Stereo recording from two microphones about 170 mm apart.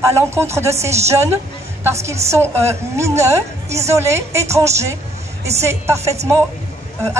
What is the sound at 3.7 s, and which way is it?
Speech, 40° right (ahead or behind).